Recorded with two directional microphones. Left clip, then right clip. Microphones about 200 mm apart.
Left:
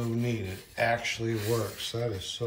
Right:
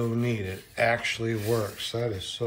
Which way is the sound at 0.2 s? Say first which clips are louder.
Right 3 dB; 15° left (ahead or behind).